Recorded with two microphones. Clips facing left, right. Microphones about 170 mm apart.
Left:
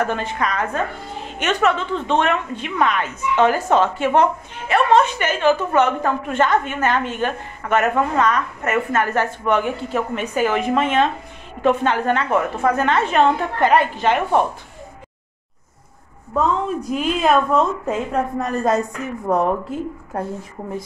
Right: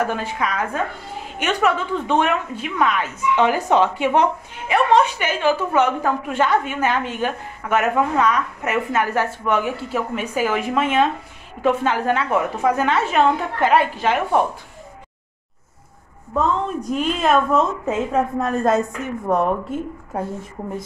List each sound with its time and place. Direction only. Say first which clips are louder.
0.0 s a woman's voice: left 1 dB; 10° right (ahead or behind)
16.3 s a woman's voice: left 1 dB; centre (ahead or behind)